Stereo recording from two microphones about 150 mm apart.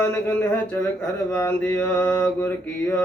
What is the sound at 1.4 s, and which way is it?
Mantra, 15° left (ahead or behind).